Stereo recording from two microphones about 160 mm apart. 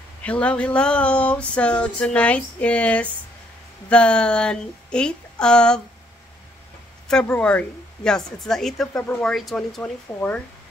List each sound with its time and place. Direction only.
0.2 s a sound: 10° left (ahead or behind)
3.9 s a woman's voice: 5° left (ahead or behind)
7.1 s a woman's voice: 5° left (ahead or behind)